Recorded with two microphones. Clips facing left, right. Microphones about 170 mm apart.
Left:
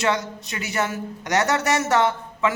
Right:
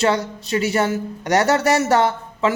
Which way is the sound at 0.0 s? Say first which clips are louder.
Right 4 dB; 30° right (ahead or behind).